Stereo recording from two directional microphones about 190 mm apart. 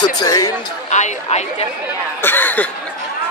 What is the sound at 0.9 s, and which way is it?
Speech, 40° left (ahead or behind).